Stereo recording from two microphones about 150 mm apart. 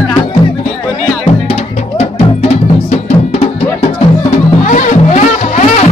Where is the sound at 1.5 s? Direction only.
45° left (ahead or behind).